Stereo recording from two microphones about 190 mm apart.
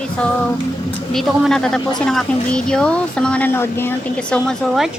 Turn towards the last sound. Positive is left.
turn(degrees=0)  # may be behind; listen again after turning